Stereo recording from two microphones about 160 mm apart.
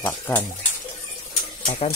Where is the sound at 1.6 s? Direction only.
40° left (ahead or behind).